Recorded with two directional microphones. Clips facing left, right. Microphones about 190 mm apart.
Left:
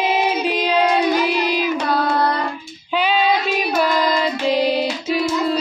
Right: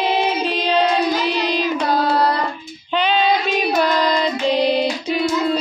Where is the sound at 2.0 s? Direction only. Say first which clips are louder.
Right 1 dB; 35° right (ahead or behind).